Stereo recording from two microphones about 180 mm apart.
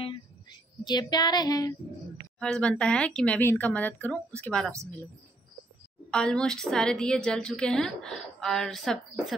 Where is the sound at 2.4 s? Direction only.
5° left (ahead or behind).